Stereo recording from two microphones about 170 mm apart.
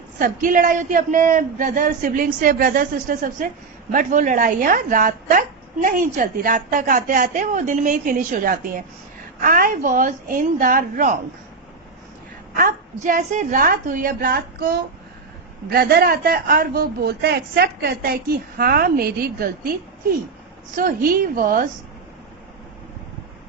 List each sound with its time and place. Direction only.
0.2 s a woman's voice: 50° right (ahead or behind)
13.0 s speech: 50° right (ahead or behind)
20.7 s speech: 55° right (ahead or behind)